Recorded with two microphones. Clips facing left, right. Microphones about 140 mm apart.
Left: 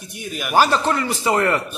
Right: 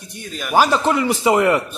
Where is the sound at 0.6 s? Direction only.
10° right (ahead or behind).